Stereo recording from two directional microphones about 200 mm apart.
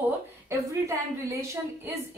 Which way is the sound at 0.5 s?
15° right (ahead or behind).